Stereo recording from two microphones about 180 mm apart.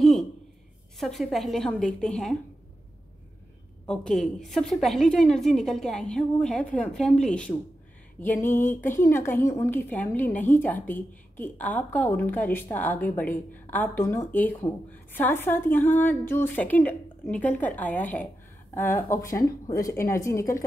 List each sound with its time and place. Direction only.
0.9 s a woman's voice: centre (ahead or behind)
3.8 s a woman's voice: 5° left (ahead or behind)